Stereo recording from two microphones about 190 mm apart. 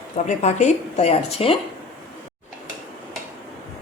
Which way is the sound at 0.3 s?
40° left (ahead or behind).